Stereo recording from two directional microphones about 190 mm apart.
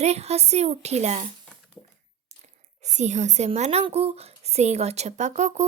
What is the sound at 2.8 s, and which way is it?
Speech, 40° right (ahead or behind).